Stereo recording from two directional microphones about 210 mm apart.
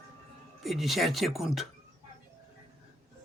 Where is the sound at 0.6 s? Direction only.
Centre (ahead or behind).